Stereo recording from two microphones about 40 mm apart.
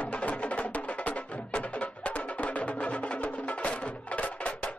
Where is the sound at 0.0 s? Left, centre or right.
Left.